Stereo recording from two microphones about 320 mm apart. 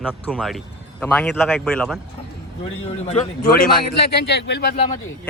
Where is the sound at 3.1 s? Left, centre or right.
Left.